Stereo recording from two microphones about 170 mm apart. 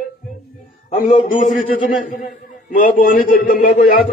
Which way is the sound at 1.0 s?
50° left (ahead or behind).